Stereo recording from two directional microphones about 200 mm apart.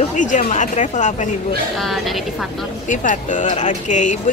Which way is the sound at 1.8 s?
Centre (ahead or behind).